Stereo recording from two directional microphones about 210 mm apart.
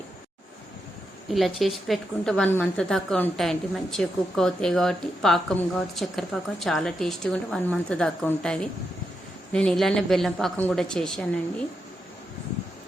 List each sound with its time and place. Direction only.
1.3 s speech: centre (ahead or behind)